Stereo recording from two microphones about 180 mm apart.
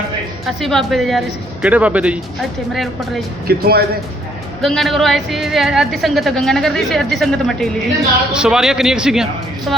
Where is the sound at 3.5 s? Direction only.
60° right (ahead or behind).